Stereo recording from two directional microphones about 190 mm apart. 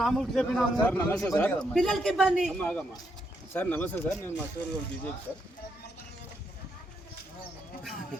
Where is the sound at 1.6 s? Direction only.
Centre (ahead or behind).